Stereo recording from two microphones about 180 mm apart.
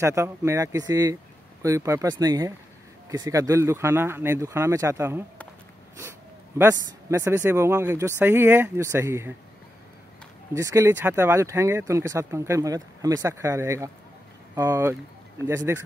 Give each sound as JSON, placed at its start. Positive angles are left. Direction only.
{"t": 0.0, "sound": "speech", "side_deg": -15}
{"t": 6.6, "sound": "speech", "side_deg": -15}
{"t": 10.5, "sound": "speech", "side_deg": -15}